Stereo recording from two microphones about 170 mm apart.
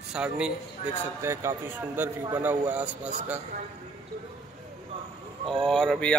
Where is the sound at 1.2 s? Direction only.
15° right (ahead or behind).